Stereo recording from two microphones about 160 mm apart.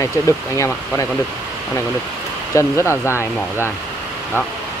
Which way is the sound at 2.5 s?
15° left (ahead or behind).